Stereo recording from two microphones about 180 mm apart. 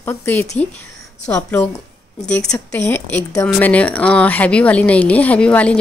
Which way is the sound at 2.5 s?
15° left (ahead or behind).